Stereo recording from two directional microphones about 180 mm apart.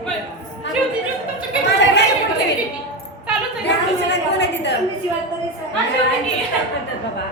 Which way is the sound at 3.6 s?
70° left (ahead or behind).